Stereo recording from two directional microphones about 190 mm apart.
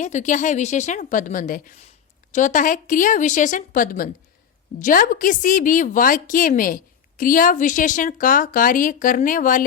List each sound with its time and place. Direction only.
0.0 s a woman's voice: 40° left (ahead or behind)